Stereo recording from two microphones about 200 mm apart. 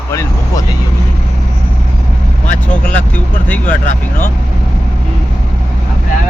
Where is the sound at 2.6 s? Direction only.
5° left (ahead or behind).